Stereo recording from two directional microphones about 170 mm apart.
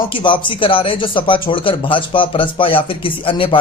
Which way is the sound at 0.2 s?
30° left (ahead or behind).